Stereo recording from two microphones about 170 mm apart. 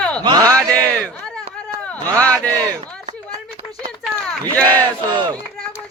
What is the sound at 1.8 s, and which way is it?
Speech, 10° left (ahead or behind).